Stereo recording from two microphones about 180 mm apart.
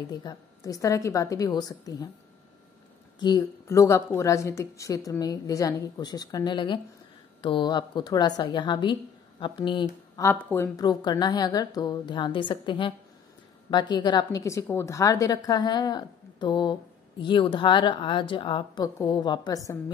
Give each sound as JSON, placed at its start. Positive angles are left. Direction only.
{"t": 0.1, "sound": "a woman's voice", "side_deg": 20}
{"t": 3.2, "sound": "a woman's voice", "side_deg": 20}
{"t": 10.2, "sound": "a woman's voice", "side_deg": 10}